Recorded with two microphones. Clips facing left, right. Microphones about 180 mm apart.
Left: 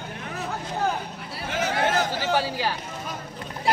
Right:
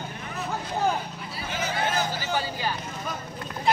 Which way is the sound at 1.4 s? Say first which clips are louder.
Left 4 dB; 70° left (ahead or behind).